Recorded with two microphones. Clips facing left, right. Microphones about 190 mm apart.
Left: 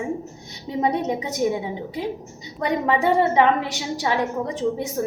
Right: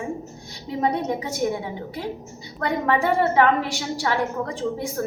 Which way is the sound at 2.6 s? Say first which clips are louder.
Left 1 dB; 15° left (ahead or behind).